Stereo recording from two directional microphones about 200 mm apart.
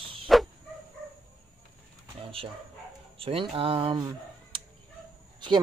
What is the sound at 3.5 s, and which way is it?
Speech, 30° right (ahead or behind).